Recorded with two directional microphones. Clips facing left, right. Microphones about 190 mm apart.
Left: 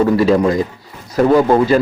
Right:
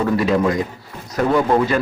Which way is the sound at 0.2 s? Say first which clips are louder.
Left 5 dB; 30° left (ahead or behind).